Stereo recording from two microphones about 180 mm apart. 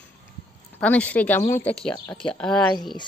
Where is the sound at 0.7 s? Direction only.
5° left (ahead or behind).